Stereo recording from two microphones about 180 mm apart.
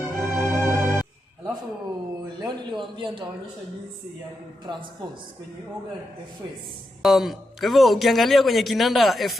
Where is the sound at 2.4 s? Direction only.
25° right (ahead or behind).